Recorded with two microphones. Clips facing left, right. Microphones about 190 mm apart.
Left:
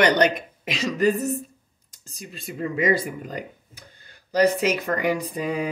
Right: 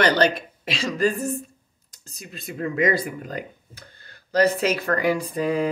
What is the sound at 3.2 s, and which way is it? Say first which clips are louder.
Speech: right 1 dB; 15° left (ahead or behind).